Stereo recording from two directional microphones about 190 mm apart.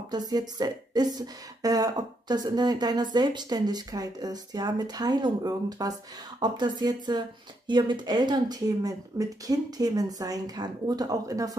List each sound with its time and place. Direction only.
0.1 s a woman's voice: 20° right (ahead or behind)